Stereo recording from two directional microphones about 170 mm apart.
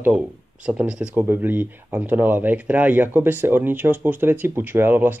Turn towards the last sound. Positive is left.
turn(degrees=-10)  # may be behind; listen again after turning